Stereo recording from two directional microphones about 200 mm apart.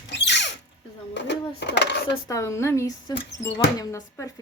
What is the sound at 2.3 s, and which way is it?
A child's voice, 15° left (ahead or behind).